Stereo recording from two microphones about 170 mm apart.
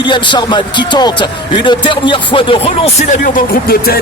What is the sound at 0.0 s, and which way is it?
Speech, 25° left (ahead or behind).